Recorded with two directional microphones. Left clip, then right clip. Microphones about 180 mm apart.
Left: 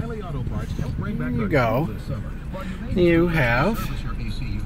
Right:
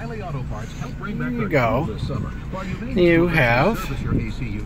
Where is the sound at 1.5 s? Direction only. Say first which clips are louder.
Right 1 dB; 20° left (ahead or behind).